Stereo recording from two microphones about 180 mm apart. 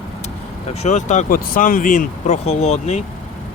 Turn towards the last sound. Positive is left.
turn(degrees=35)  # may be behind; listen again after turning